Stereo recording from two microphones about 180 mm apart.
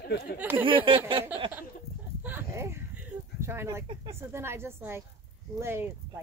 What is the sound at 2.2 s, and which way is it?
Speech, 15° right (ahead or behind).